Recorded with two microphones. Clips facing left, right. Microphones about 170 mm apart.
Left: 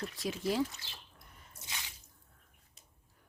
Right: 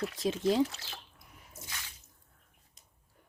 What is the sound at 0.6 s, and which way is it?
Speech, 90° right.